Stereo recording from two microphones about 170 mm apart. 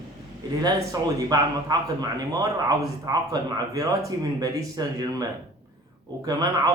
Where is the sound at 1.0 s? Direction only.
20° right (ahead or behind).